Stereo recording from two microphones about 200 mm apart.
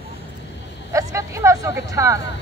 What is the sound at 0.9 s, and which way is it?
Speech, 15° right (ahead or behind).